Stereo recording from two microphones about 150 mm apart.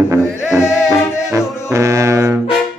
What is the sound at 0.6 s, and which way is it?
Music, 5° right (ahead or behind).